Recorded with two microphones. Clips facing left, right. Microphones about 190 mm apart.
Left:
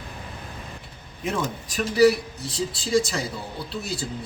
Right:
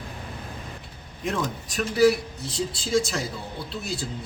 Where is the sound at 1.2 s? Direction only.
Centre (ahead or behind).